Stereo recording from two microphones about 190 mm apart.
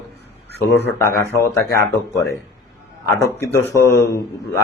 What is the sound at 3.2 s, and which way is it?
A man's voice, 15° left (ahead or behind).